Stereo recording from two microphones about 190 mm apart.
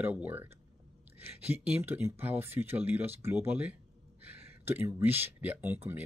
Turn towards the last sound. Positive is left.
turn(degrees=-10)  # may be behind; listen again after turning